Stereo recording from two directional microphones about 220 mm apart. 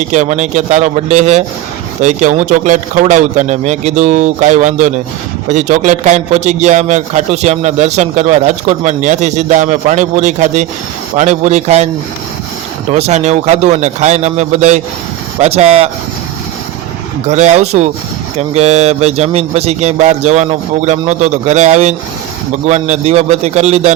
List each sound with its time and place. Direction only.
0.1 s a man's voice: 35° right (ahead or behind)
12.9 s a man's voice: 30° right (ahead or behind)
17.2 s a man's voice: 30° right (ahead or behind)